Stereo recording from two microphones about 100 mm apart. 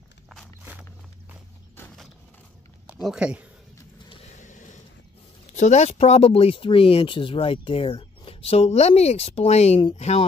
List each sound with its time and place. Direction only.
3.0 s speech: 5° right (ahead or behind)
5.9 s speech: 90° left